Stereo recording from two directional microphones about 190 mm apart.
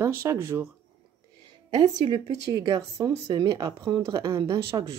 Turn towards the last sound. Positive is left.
turn(degrees=-20)  # may be behind; listen again after turning